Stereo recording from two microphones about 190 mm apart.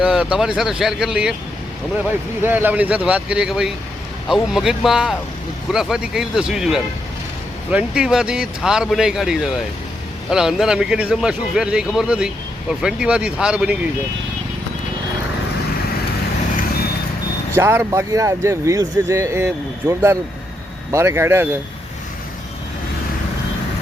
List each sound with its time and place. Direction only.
0.0 s a man's voice: 5° right (ahead or behind)
17.5 s a man's voice: 15° right (ahead or behind)